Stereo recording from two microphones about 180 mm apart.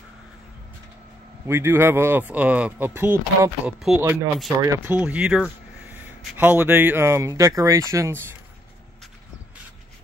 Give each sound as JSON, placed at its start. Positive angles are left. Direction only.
{"t": 1.5, "sound": "speech", "side_deg": -15}